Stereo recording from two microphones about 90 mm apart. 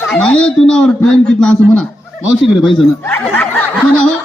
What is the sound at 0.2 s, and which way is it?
A man's voice, 10° left (ahead or behind).